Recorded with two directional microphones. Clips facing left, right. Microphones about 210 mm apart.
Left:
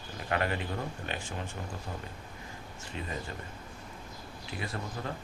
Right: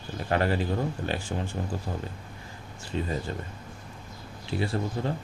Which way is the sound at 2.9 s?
30° right (ahead or behind).